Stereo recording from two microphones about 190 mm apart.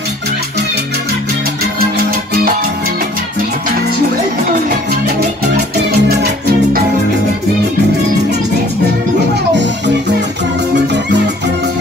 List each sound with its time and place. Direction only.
5.8 s music: 60° right (ahead or behind)
9.3 s music: 65° right (ahead or behind)